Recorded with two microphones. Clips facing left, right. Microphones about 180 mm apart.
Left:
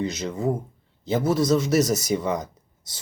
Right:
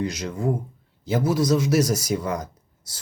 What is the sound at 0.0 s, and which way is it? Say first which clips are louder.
Speech: even; 10° right (ahead or behind).